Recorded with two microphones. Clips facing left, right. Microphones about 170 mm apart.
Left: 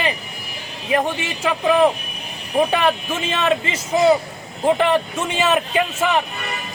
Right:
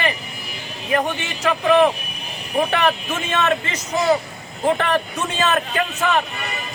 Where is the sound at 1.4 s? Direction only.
10° left (ahead or behind).